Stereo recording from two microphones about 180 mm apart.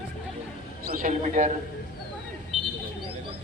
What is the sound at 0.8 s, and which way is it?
Speech, 50° right (ahead or behind).